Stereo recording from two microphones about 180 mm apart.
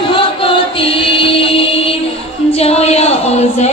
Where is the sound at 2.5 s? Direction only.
35° left (ahead or behind).